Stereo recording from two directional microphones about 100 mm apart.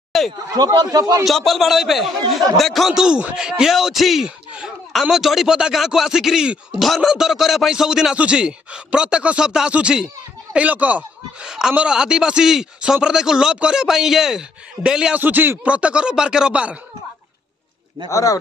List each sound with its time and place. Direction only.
0.1 s chatter: centre (ahead or behind)
0.5 s a man's voice: 35° right (ahead or behind)
1.2 s a man's voice: 5° left (ahead or behind)
15.2 s speech: 20° right (ahead or behind)
18.1 s speech: 35° left (ahead or behind)